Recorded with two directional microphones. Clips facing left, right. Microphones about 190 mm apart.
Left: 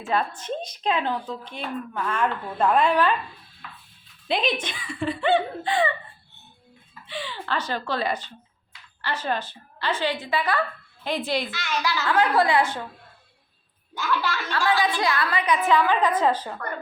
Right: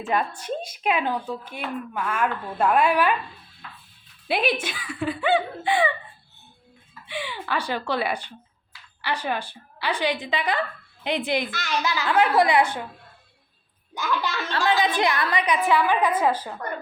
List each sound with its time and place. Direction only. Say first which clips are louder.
0.0 s speech: even; 15° right (ahead or behind)
4.3 s speech: right 1 dB; 10° right (ahead or behind)
7.1 s speech: right 1 dB; 15° right (ahead or behind)
11.8 s a child's voice: right 1 dB; 20° right (ahead or behind)
14.1 s speech: even; 20° right (ahead or behind)